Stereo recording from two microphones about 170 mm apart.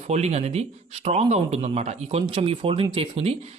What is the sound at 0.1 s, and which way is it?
Speech, 40° right (ahead or behind).